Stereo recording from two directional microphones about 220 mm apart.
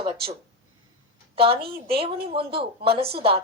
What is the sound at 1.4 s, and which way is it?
A woman's voice, 25° right (ahead or behind).